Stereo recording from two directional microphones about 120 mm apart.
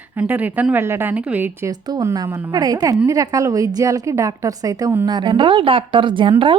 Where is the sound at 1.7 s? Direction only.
30° right (ahead or behind).